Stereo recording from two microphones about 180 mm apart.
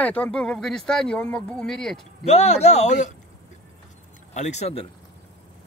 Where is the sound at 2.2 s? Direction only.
35° left (ahead or behind).